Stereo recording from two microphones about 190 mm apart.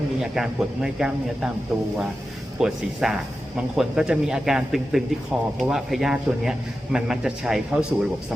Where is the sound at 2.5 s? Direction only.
5° right (ahead or behind).